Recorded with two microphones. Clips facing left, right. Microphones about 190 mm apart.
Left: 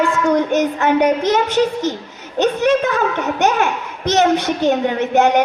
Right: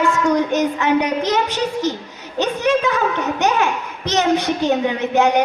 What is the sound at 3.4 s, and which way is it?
A woman's voice, 55° left (ahead or behind).